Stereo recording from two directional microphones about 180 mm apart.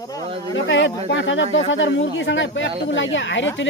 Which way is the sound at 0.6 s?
90° left.